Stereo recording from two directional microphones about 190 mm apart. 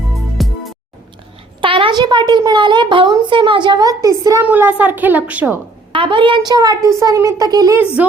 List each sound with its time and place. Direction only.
0.3 s music: centre (ahead or behind)
1.6 s a woman's voice: 25° right (ahead or behind); by 5.5 s 10° right (ahead or behind)
5.9 s speech: 25° right (ahead or behind)
8.0 s a woman's voice: 10° right (ahead or behind)